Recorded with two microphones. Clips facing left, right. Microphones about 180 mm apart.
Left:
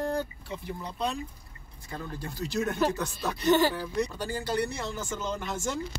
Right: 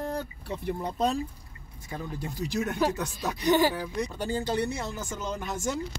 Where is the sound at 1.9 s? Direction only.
15° right (ahead or behind).